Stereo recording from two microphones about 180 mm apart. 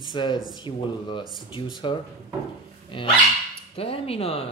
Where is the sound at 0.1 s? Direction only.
25° left (ahead or behind).